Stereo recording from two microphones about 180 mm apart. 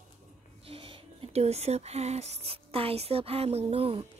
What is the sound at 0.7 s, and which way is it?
Speech, 30° right (ahead or behind).